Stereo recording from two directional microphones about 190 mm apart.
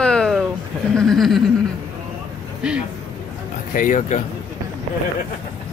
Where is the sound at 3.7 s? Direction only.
45° left (ahead or behind).